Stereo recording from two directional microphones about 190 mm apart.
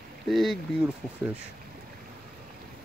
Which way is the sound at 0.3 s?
Centre (ahead or behind).